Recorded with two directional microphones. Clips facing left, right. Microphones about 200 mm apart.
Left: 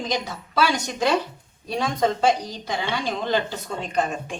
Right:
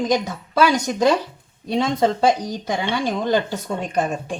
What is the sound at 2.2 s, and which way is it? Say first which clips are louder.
A woman's voice: right 3 dB; 45° right (ahead or behind).